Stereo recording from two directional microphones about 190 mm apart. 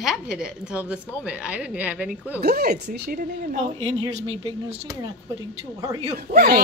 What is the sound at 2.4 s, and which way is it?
Speech, 55° right (ahead or behind).